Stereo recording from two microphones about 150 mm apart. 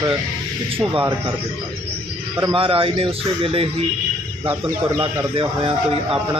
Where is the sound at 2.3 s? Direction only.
35° right (ahead or behind).